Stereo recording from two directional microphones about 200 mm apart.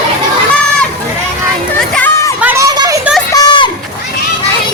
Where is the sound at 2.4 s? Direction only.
10° right (ahead or behind).